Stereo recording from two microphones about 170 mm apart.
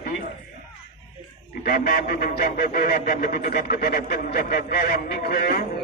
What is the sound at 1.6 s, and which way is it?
A man's voice, 60° left (ahead or behind).